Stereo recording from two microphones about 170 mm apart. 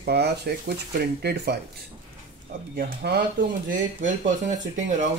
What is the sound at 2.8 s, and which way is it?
Speech, 70° right (ahead or behind).